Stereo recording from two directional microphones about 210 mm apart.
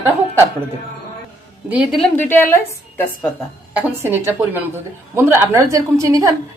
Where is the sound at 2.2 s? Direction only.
10° left (ahead or behind).